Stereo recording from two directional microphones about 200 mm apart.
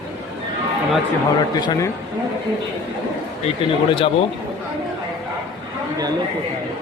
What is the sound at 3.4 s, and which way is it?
Speech, 25° left (ahead or behind).